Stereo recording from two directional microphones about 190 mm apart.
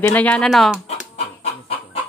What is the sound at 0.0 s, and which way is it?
Speech, 10° left (ahead or behind).